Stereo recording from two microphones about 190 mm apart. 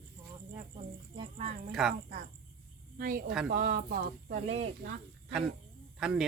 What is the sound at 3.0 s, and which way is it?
Speech, 50° right (ahead or behind).